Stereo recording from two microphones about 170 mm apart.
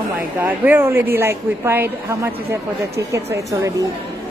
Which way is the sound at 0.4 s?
10° right (ahead or behind).